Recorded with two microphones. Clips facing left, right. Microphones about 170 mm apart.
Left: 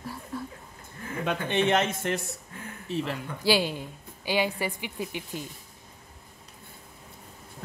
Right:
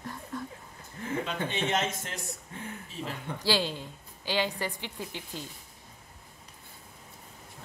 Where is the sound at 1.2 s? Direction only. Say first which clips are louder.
Left 10 dB; 60° left (ahead or behind).